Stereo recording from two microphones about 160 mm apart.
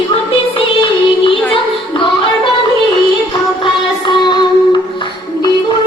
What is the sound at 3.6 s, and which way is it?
Music, 30° left (ahead or behind).